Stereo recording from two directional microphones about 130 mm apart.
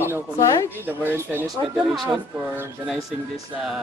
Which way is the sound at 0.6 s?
15° right (ahead or behind).